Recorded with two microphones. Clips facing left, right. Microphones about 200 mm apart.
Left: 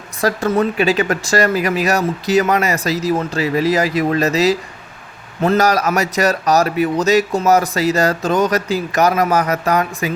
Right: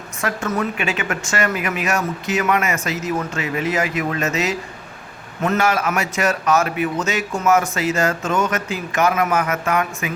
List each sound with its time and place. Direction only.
0.2 s a man's voice: 35° left (ahead or behind)